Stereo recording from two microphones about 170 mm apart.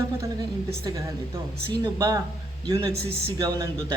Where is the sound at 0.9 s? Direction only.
20° right (ahead or behind).